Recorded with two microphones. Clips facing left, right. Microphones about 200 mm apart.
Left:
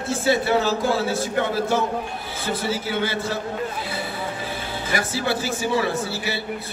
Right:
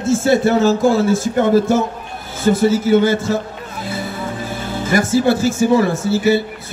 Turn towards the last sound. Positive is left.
turn(degrees=-45)  # may be behind; listen again after turning